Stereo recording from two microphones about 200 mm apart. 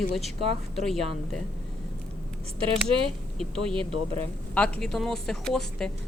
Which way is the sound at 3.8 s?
30° right (ahead or behind).